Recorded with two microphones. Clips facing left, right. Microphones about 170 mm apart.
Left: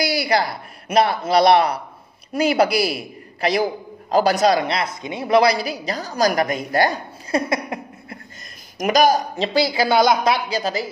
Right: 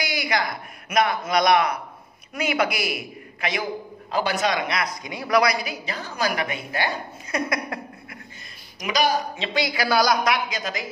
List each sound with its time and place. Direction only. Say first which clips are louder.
0.0 s a man's voice: left 6 dB; 35° left (ahead or behind)
8.7 s a man's voice: left 7 dB; 45° left (ahead or behind)